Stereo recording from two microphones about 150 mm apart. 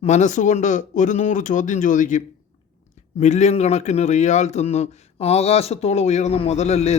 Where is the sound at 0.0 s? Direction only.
50° left (ahead or behind).